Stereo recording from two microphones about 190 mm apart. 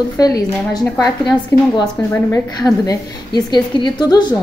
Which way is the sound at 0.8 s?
Centre (ahead or behind).